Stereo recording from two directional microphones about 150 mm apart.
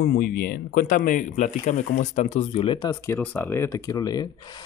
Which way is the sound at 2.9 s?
15° left (ahead or behind).